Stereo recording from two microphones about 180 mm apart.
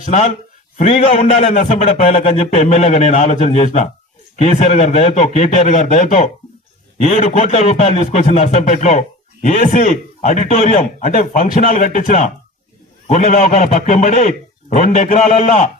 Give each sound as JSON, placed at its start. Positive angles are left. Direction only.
{"t": 0.0, "sound": "a man's voice", "side_deg": 40}